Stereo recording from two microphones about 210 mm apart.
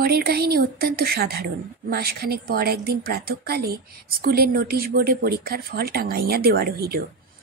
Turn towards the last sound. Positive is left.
turn(degrees=-45)  # may be behind; listen again after turning